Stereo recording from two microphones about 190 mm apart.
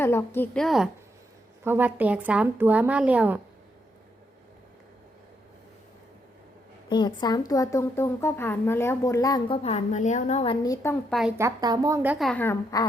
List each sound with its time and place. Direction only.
0.0 s a woman's voice: 10° left (ahead or behind)
1.6 s a woman's voice: 10° right (ahead or behind)
6.8 s a woman's voice: 25° left (ahead or behind)
9.6 s a woman's voice: 35° left (ahead or behind); by 10.9 s 20° left (ahead or behind)
11.1 s a woman's voice: centre (ahead or behind)
11.3 s a woman's voice: 20° right (ahead or behind)
12.2 s a woman's voice: 10° left (ahead or behind)